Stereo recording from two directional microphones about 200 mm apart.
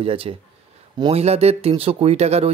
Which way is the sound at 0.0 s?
30° right (ahead or behind).